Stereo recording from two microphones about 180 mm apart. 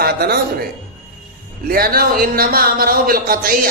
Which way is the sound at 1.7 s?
55° right (ahead or behind).